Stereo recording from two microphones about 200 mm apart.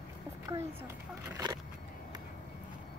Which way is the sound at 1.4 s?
20° right (ahead or behind).